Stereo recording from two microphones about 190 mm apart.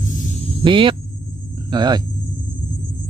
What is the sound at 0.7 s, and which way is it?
Speech, 25° right (ahead or behind).